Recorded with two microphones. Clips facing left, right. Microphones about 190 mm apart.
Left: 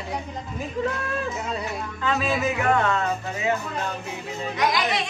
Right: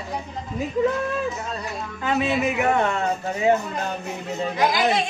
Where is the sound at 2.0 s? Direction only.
20° right (ahead or behind).